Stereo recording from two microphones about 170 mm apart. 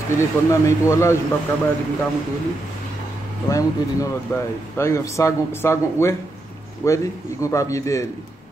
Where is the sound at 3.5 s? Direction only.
20° left (ahead or behind).